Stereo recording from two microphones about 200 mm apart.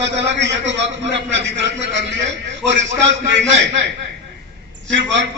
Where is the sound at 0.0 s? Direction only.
60° right (ahead or behind).